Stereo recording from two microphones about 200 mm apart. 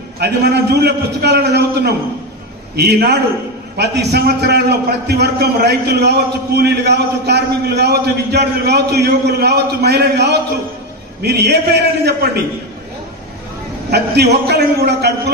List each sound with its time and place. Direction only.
0.2 s a man's voice: 55° right (ahead or behind)
13.8 s a man's voice: 55° right (ahead or behind)